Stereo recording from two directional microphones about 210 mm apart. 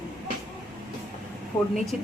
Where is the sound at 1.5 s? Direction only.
25° left (ahead or behind).